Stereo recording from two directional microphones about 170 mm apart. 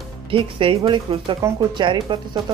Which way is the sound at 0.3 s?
30° right (ahead or behind).